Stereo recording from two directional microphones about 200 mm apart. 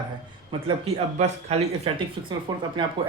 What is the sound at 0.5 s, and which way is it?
Speech, 25° right (ahead or behind).